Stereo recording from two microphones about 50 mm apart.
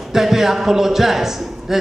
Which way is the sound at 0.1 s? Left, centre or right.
Centre.